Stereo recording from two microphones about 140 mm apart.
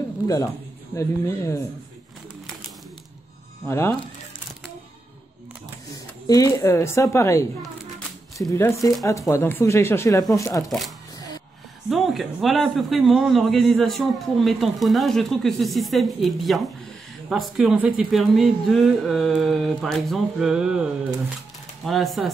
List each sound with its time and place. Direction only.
0.9 s a woman's voice: 20° left (ahead or behind)
3.6 s a woman's voice: 20° left (ahead or behind)
6.2 s a woman's voice: 25° left (ahead or behind)
11.1 s music: 25° left (ahead or behind)
11.9 s a man's voice: centre (ahead or behind)